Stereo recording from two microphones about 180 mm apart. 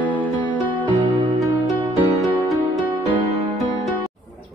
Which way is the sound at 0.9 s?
25° right (ahead or behind).